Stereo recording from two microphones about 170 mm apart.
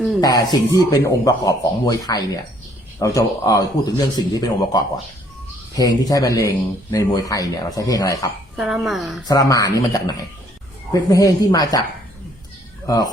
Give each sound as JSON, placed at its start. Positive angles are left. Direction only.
{"t": 0.2, "sound": "speech", "side_deg": 20}
{"t": 8.5, "sound": "speech", "side_deg": 0}
{"t": 9.2, "sound": "speech", "side_deg": 20}
{"t": 12.8, "sound": "speech", "side_deg": 20}